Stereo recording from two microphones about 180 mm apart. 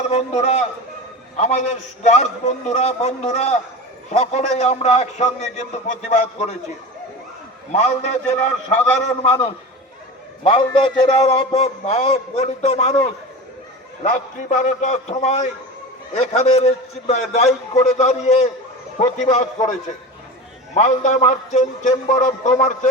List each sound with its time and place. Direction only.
0.1 s a man's voice: 40° left (ahead or behind)
7.7 s a man's voice: 40° left (ahead or behind)
10.4 s a man's voice: 30° left (ahead or behind)
20.7 s a man's voice: 40° left (ahead or behind)